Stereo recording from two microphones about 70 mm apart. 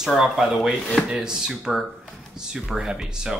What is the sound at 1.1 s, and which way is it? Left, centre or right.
Speech, centre.